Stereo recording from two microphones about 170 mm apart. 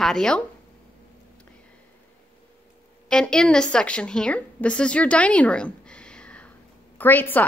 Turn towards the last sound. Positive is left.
turn(degrees=10)  # may be behind; listen again after turning